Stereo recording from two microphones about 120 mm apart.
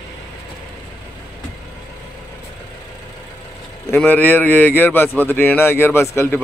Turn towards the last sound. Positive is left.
turn(degrees=20)  # may be behind; listen again after turning